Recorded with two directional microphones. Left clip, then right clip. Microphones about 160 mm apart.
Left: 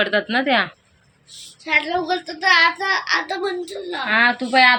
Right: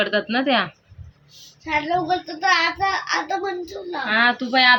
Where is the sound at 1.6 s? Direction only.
35° right (ahead or behind).